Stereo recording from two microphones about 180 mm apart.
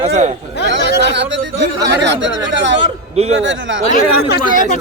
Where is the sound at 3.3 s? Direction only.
90° right.